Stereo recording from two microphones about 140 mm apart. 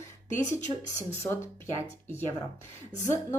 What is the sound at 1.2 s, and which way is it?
Speech, 15° left (ahead or behind).